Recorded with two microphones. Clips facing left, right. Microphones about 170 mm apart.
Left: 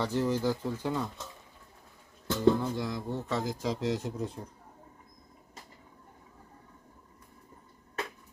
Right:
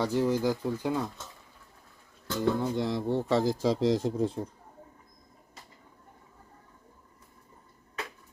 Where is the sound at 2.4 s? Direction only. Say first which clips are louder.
Left 1 dB; 20° right (ahead or behind).